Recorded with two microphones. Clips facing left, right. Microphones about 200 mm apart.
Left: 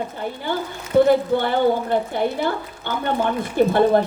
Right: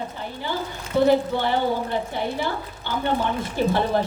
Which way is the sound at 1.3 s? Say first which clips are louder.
Left 4 dB; 50° left (ahead or behind).